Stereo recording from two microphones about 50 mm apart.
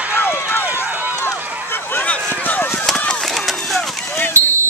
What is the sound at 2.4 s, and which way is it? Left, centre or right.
Chop, left.